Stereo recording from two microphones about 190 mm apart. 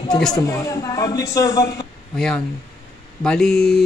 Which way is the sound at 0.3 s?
20° left (ahead or behind).